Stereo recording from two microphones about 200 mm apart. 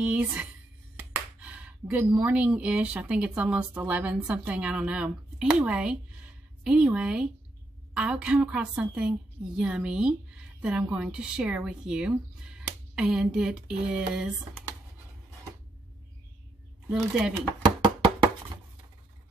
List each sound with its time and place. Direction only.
0.0 s a woman's voice: 5° right (ahead or behind)
14.1 s speech: 5° left (ahead or behind)
17.6 s knock: 25° right (ahead or behind)